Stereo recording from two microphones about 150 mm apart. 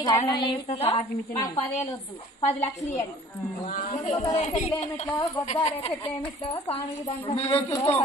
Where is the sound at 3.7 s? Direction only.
70° left (ahead or behind).